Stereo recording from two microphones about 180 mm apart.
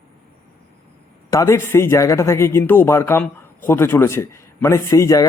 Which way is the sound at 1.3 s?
15° left (ahead or behind).